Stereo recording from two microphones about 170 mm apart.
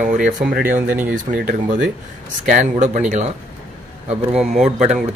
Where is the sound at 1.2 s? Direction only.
55° right (ahead or behind).